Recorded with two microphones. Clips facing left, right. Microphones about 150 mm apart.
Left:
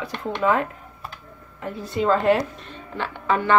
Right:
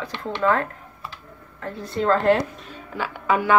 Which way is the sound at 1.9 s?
5° left (ahead or behind).